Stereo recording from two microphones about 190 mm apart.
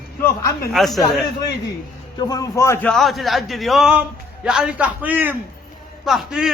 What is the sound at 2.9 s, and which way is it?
A man's voice, centre (ahead or behind).